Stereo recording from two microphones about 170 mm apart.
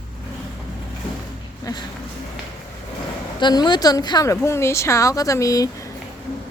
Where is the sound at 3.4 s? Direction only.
25° left (ahead or behind).